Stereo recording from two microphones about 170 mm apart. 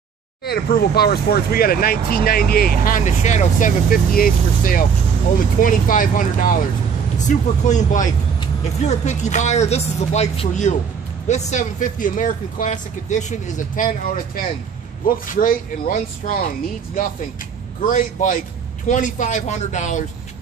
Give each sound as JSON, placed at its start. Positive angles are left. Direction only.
{"t": 0.5, "sound": "speech", "side_deg": 65}
{"t": 3.2, "sound": "speech", "side_deg": 45}
{"t": 17.8, "sound": "speech", "side_deg": 50}